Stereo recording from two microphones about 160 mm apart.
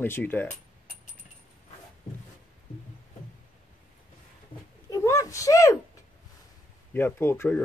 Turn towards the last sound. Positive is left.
turn(degrees=15)  # may be behind; listen again after turning